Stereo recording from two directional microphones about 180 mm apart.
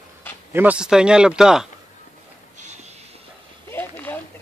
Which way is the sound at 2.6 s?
40° right (ahead or behind).